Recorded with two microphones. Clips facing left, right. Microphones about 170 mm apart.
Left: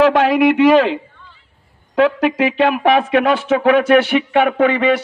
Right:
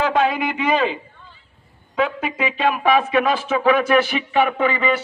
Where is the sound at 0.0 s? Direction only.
90° left.